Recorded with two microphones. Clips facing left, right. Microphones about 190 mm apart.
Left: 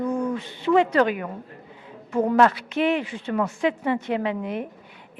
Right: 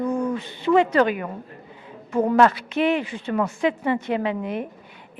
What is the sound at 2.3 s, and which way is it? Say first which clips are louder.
Speech: right 1 dB; 10° right (ahead or behind).